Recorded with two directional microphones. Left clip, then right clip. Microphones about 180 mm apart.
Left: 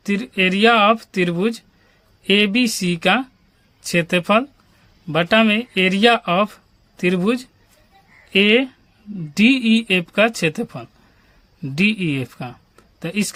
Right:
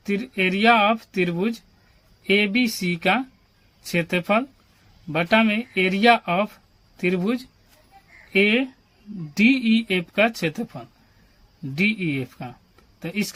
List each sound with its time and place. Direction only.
0.0 s speech: 45° left (ahead or behind)